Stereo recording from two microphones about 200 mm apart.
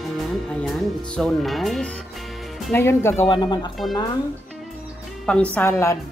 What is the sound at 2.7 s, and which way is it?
A woman's voice, 10° left (ahead or behind).